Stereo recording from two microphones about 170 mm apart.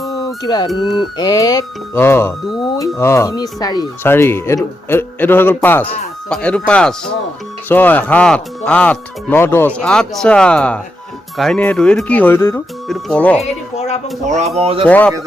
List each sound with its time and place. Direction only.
0.4 s speech: 25° left (ahead or behind); by 13.4 s 5° left (ahead or behind)
13.4 s speech: 40° left (ahead or behind)
14.3 s speech: 40° right (ahead or behind)
14.8 s speech: 10° left (ahead or behind)